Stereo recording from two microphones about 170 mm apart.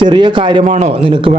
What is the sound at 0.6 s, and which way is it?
Speech, 45° right (ahead or behind).